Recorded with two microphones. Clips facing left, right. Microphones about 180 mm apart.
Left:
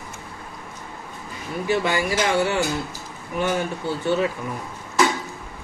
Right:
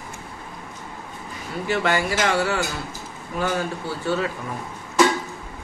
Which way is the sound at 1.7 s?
15° left (ahead or behind).